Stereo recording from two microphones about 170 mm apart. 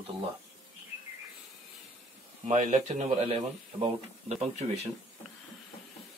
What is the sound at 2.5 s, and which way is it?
A man's voice, 45° right (ahead or behind).